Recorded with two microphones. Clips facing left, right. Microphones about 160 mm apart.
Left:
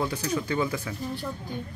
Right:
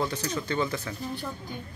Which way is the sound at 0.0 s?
10° left (ahead or behind).